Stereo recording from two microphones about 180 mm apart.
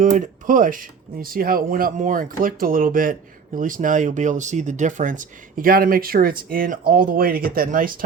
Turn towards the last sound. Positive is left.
turn(degrees=-50)  # may be behind; listen again after turning